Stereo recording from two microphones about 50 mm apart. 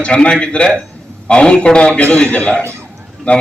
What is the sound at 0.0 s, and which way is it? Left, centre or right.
A man's voice, left.